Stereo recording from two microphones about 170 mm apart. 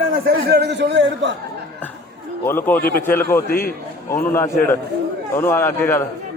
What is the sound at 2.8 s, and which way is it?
Speech, 60° left (ahead or behind).